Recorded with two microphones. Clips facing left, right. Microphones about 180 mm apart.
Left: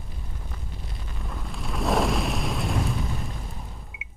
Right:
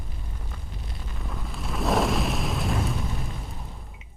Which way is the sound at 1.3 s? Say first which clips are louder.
Even; centre (ahead or behind).